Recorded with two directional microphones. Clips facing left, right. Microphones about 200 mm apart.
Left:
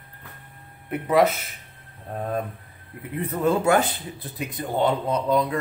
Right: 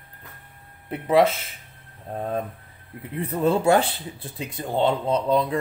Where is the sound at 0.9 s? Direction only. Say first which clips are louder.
Right 1 dB; 30° right (ahead or behind).